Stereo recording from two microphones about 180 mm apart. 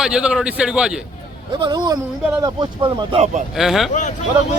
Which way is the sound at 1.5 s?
25° right (ahead or behind).